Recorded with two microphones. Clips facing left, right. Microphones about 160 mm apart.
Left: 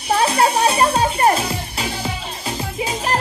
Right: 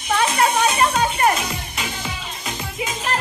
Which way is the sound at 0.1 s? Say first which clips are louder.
Left 2 dB; 35° left (ahead or behind).